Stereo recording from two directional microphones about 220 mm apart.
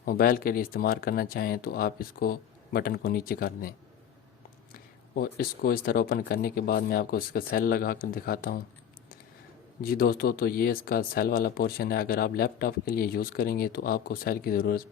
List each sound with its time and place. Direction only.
0.0 s speech: 40° left (ahead or behind)
4.7 s speech: 40° left (ahead or behind)
9.8 s speech: 40° left (ahead or behind)